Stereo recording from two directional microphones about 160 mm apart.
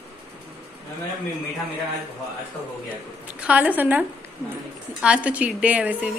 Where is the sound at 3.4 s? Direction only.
10° right (ahead or behind).